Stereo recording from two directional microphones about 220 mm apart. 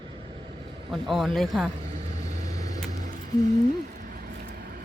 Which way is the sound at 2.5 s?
15° left (ahead or behind).